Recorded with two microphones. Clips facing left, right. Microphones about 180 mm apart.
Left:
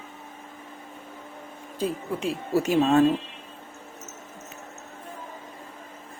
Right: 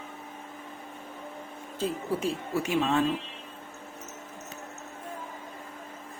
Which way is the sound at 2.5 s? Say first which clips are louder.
Left 7 dB; 40° left (ahead or behind).